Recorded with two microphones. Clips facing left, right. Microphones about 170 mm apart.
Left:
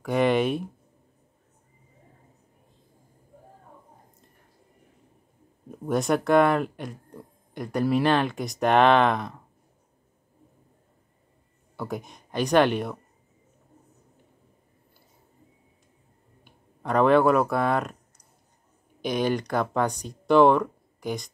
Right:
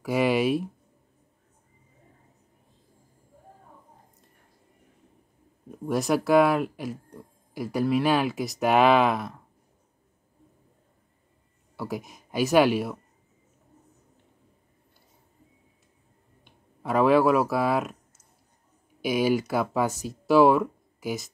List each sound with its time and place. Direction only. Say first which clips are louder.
0.0 s speech: left 1 dB; 5° right (ahead or behind)
5.7 s speech: left 1 dB; centre (ahead or behind)
11.7 s speech: even; centre (ahead or behind)
16.4 s speech: even; 5° right (ahead or behind)